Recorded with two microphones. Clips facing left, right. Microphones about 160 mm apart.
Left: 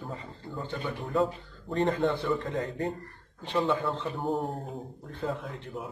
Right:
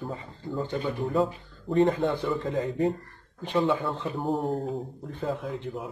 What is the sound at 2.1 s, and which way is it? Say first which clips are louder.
Speech: right 2 dB; 10° right (ahead or behind).